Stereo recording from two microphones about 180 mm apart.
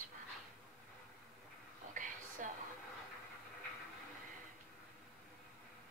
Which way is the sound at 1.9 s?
45° right (ahead or behind).